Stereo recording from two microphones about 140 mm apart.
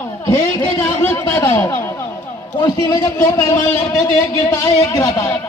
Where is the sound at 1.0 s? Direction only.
15° left (ahead or behind).